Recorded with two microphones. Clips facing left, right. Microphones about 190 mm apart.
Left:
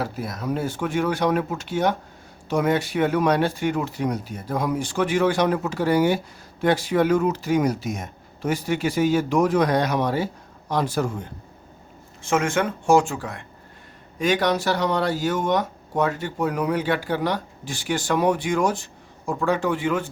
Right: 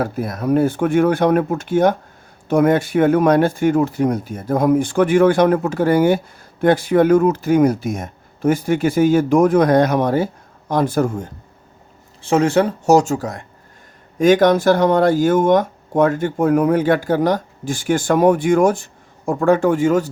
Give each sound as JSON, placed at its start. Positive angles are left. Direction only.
{"t": 0.0, "sound": "speech", "side_deg": -55}
{"t": 12.2, "sound": "speech", "side_deg": -35}